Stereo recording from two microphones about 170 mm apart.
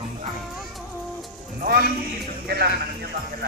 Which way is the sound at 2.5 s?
65° right (ahead or behind).